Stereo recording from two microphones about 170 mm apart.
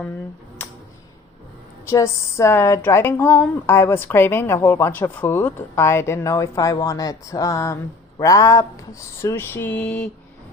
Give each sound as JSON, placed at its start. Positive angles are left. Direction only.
{"t": 1.9, "sound": "speech", "side_deg": 20}